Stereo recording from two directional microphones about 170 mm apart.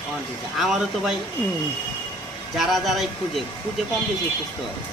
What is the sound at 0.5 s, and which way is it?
Speech, centre (ahead or behind).